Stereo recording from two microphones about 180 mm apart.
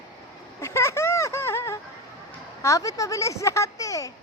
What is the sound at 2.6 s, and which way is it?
Speech, 20° left (ahead or behind).